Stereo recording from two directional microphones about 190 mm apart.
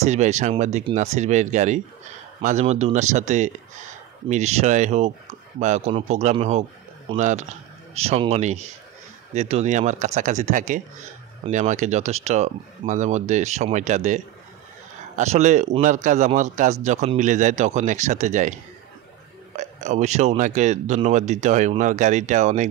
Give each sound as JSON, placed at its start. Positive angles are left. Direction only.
{"t": 0.0, "sound": "speech", "side_deg": -35}
{"t": 19.5, "sound": "speech", "side_deg": -35}